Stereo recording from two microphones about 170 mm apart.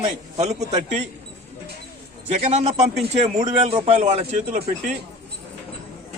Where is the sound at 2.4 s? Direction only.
40° right (ahead or behind).